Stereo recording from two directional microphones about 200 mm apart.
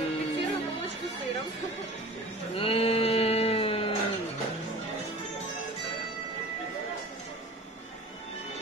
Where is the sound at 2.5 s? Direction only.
30° left (ahead or behind).